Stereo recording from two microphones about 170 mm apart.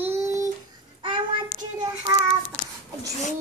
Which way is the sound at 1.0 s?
25° right (ahead or behind).